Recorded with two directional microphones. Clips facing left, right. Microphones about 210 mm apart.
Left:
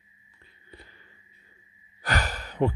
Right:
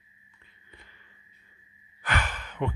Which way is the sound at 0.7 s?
35° left (ahead or behind).